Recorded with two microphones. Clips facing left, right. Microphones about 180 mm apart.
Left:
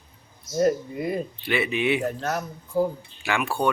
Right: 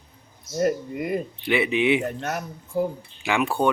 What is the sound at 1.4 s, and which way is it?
Speech, 20° right (ahead or behind).